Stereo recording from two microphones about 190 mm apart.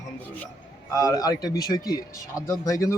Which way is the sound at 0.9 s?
15° left (ahead or behind).